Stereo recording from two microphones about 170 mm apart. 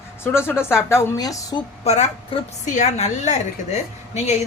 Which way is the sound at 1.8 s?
40° left (ahead or behind).